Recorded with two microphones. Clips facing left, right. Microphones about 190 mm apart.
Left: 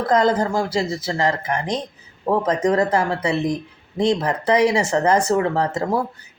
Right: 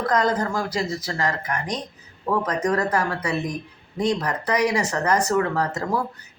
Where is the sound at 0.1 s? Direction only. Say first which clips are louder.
Left 6 dB; 30° left (ahead or behind).